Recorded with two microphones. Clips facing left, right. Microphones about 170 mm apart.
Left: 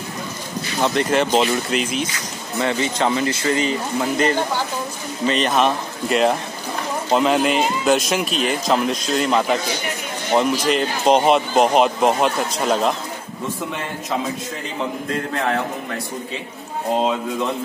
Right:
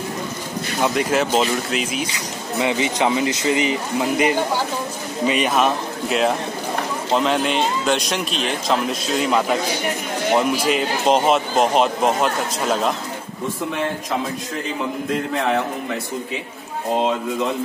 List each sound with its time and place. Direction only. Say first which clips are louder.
0.7 s speech: left 1 dB; 5° right (ahead or behind)
2.1 s speech: right 1 dB; 15° right (ahead or behind)